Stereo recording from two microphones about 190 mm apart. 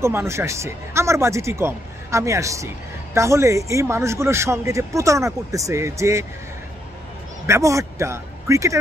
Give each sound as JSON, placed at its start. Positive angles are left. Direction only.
{"t": 0.0, "sound": "speech", "side_deg": -15}
{"t": 7.4, "sound": "a man's voice", "side_deg": -15}